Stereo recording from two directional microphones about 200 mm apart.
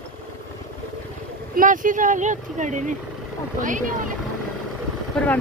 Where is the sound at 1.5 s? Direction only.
40° right (ahead or behind).